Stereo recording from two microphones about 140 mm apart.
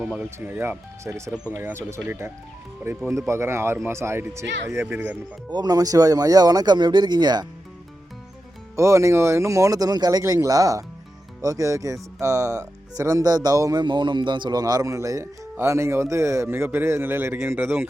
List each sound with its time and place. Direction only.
0.0 s speech: 10° right (ahead or behind)
5.5 s speech: 30° right (ahead or behind)
8.7 s speech: 20° right (ahead or behind)